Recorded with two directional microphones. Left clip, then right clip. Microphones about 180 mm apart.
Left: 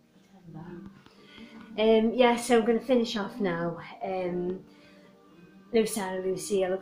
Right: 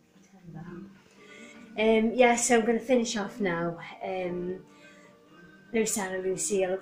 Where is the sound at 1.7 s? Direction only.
5° right (ahead or behind).